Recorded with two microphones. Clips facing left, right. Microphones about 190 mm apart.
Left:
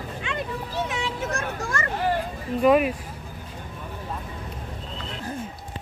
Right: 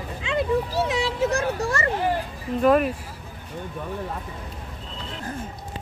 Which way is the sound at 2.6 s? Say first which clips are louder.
Even; 5° left (ahead or behind).